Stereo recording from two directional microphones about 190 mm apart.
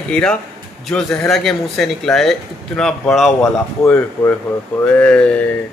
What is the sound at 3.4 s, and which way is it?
Speech, 10° left (ahead or behind).